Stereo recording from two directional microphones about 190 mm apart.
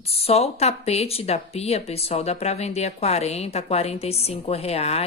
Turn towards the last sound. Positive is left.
turn(degrees=35)  # may be behind; listen again after turning